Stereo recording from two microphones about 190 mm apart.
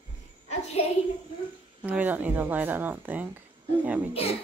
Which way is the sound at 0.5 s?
35° left (ahead or behind).